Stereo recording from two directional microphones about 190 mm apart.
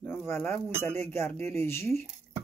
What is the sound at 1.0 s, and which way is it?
Speech, 10° left (ahead or behind).